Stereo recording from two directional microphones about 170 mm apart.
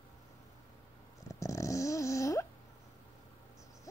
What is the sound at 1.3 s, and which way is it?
Snoring, 20° left (ahead or behind).